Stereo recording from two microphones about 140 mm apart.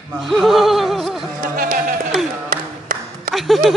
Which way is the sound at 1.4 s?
90° right.